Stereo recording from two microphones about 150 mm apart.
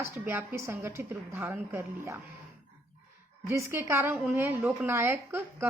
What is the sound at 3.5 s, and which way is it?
Speech, 15° right (ahead or behind).